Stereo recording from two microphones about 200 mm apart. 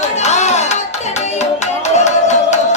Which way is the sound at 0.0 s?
35° left (ahead or behind).